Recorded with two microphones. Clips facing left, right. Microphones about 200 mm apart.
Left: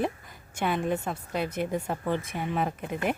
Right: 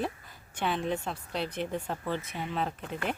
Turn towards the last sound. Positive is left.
turn(degrees=10)  # may be behind; listen again after turning